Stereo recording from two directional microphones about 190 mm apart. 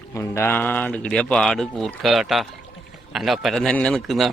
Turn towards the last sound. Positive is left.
turn(degrees=0)  # may be behind; listen again after turning